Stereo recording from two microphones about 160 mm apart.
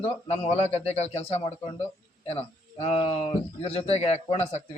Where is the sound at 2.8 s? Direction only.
35° left (ahead or behind).